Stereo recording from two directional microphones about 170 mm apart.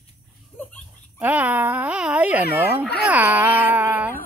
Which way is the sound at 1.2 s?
10° right (ahead or behind).